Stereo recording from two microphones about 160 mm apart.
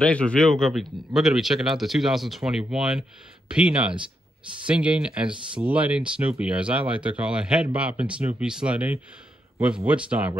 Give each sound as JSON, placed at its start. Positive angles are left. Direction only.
{"t": 0.1, "sound": "speech", "side_deg": 5}
{"t": 5.3, "sound": "speech", "side_deg": -30}
{"t": 5.7, "sound": "speech", "side_deg": -10}